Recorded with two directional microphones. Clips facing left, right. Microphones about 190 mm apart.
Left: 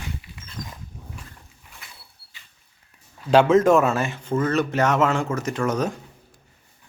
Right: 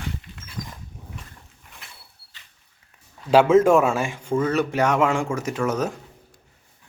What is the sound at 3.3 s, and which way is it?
Speech, 5° right (ahead or behind).